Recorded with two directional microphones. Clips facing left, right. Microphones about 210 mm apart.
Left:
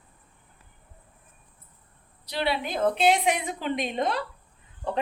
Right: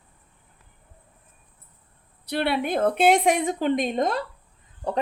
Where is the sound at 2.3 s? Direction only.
55° right (ahead or behind).